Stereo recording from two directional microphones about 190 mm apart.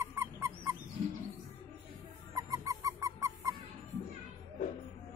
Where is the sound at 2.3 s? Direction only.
20° right (ahead or behind).